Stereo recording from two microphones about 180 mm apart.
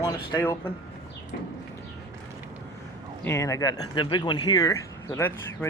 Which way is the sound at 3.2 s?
15° left (ahead or behind).